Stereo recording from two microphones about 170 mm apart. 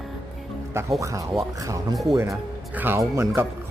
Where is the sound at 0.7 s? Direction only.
15° right (ahead or behind).